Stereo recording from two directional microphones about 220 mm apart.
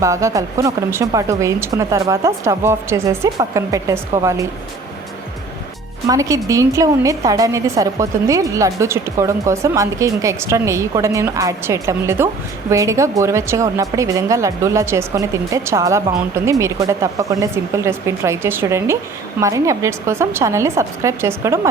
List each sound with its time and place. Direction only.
0.0 s a woman's voice: 15° right (ahead or behind)
6.1 s a woman's voice: 15° right (ahead or behind)